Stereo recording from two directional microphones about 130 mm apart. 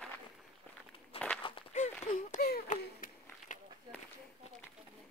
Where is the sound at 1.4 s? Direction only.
45° left (ahead or behind).